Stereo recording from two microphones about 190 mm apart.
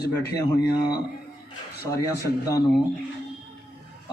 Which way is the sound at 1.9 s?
20° left (ahead or behind).